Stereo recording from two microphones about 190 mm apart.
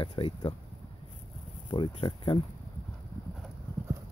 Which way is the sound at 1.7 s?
25° left (ahead or behind).